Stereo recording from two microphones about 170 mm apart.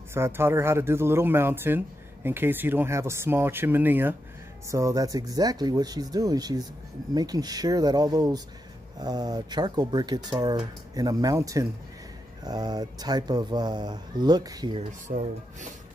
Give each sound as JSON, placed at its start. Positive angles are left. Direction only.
{"t": 0.1, "sound": "speech", "side_deg": -15}
{"t": 15.0, "sound": "speech", "side_deg": -45}